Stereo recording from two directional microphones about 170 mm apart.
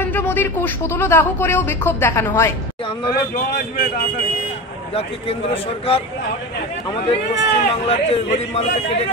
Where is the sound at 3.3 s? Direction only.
60° left (ahead or behind).